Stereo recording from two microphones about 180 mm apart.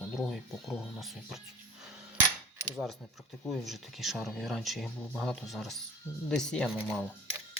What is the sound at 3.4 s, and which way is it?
Speech, centre (ahead or behind).